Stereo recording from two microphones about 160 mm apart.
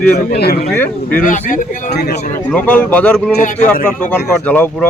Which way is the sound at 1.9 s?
80° left.